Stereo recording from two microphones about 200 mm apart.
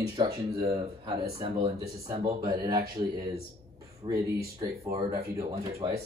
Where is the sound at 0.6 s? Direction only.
20° right (ahead or behind).